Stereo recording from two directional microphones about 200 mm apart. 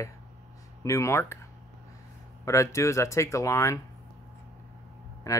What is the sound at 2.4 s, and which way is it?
Speech, 15° left (ahead or behind).